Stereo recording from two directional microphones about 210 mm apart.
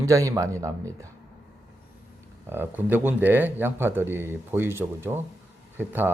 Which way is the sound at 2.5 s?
10° right (ahead or behind).